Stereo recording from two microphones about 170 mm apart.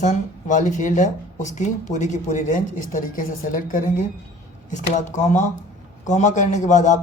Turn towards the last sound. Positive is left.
turn(degrees=45)  # may be behind; listen again after turning